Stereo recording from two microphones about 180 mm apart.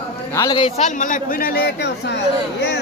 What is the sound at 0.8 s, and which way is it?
A man's voice, 45° left (ahead or behind).